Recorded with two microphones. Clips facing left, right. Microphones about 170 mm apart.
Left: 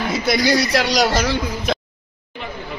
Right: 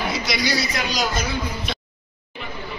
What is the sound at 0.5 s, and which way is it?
A man's voice, 70° left (ahead or behind).